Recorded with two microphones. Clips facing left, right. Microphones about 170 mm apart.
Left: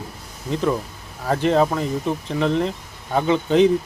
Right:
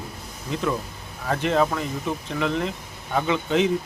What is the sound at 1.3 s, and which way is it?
Speech, 35° left (ahead or behind).